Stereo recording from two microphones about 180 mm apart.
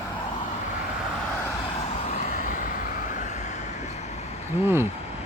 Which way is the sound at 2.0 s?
45° left (ahead or behind).